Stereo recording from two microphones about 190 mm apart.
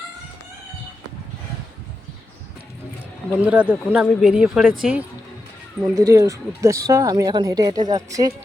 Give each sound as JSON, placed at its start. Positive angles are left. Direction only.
{"t": 3.3, "sound": "speech", "side_deg": -5}
{"t": 5.8, "sound": "a woman's voice", "side_deg": -15}